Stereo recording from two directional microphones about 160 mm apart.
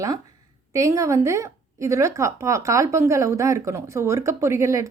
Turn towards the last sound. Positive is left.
turn(degrees=-20)  # may be behind; listen again after turning